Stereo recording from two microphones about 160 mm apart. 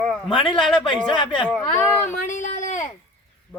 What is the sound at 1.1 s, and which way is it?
Speech, 30° left (ahead or behind).